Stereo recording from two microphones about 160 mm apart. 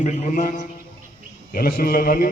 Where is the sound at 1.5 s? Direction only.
65° left (ahead or behind).